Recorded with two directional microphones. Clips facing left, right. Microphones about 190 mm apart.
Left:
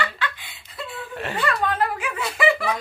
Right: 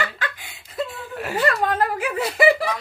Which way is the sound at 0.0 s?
45° right (ahead or behind).